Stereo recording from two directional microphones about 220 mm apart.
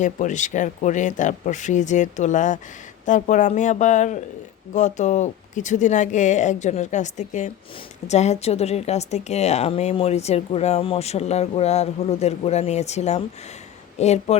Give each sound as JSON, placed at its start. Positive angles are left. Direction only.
{"t": 0.0, "sound": "a woman's voice", "side_deg": 35}